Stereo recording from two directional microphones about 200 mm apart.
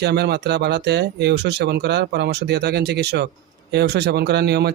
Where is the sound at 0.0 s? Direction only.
55° right (ahead or behind).